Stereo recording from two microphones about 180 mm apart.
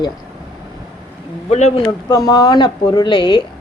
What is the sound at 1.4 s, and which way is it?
Speech, 40° left (ahead or behind).